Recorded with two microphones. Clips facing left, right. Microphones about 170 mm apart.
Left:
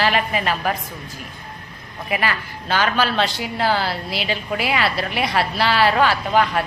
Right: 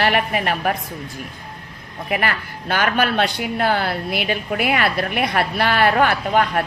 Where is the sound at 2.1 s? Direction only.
55° right (ahead or behind).